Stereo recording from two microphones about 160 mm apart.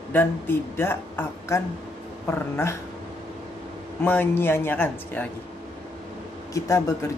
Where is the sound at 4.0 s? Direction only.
10° left (ahead or behind).